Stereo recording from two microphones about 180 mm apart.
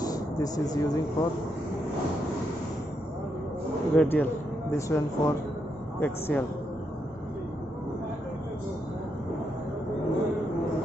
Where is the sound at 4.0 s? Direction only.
10° left (ahead or behind).